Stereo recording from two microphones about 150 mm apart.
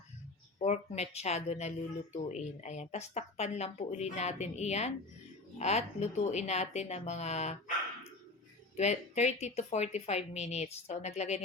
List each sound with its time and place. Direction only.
0.6 s speech: 50° left (ahead or behind)
8.7 s speech: 50° left (ahead or behind)